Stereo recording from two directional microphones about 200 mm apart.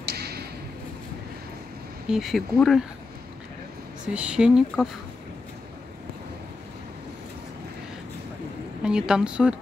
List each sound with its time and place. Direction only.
0.0 s a sound: 55° right (ahead or behind)
2.0 s a woman's voice: centre (ahead or behind)
4.1 s a woman's voice: 5° right (ahead or behind)
8.8 s a woman's voice: 5° right (ahead or behind)